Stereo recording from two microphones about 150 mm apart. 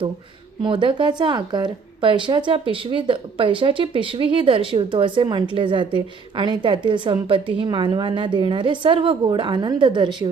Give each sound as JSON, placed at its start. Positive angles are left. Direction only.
{"t": 0.6, "sound": "a woman's voice", "side_deg": -35}